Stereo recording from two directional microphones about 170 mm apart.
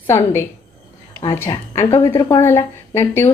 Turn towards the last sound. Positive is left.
turn(degrees=15)  # may be behind; listen again after turning